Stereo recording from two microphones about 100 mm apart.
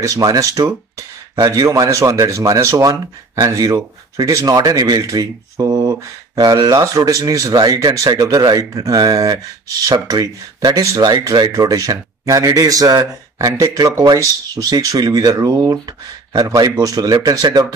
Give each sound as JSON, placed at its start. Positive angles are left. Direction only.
{"t": 0.0, "sound": "speech", "side_deg": -35}